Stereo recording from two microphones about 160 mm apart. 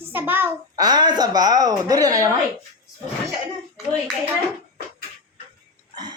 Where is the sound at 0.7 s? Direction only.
25° right (ahead or behind).